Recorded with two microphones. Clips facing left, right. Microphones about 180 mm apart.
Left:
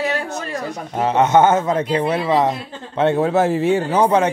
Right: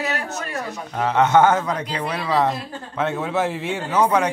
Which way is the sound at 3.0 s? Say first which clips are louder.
Left 7 dB; 30° left (ahead or behind).